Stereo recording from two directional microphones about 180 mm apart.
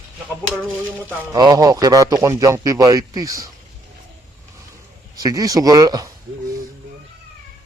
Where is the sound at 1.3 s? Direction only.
20° right (ahead or behind).